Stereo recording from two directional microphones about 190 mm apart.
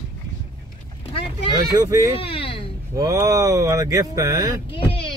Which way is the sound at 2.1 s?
30° left (ahead or behind).